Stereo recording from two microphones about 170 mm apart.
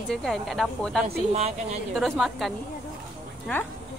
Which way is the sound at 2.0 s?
Centre (ahead or behind).